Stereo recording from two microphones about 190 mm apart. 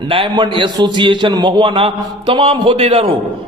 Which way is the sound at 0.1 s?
25° right (ahead or behind).